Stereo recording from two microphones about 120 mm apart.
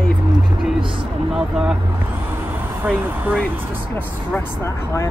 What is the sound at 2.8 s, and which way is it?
Speech, 15° right (ahead or behind).